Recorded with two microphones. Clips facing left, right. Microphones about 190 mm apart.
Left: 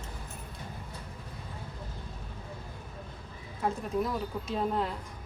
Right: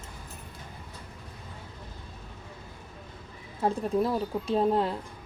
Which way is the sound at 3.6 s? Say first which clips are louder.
Right 4 dB; 35° right (ahead or behind).